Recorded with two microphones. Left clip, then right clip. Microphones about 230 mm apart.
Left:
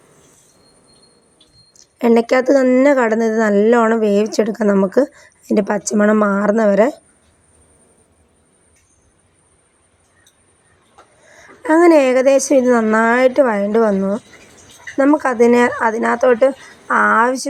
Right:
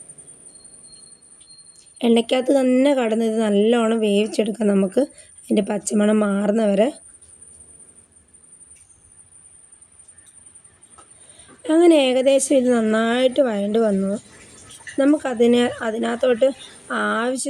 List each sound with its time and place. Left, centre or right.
2.0 s speech: centre
11.3 s a woman's voice: centre